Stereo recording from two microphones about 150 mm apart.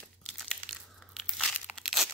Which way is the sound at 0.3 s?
Centre (ahead or behind).